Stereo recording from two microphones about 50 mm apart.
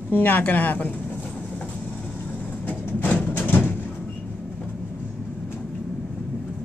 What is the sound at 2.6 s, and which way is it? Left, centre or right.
Vehicle, left.